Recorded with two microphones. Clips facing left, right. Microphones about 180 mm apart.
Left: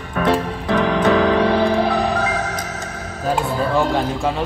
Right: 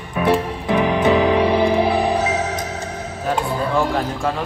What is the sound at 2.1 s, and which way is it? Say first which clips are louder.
Music: right 1 dB; 25° right (ahead or behind).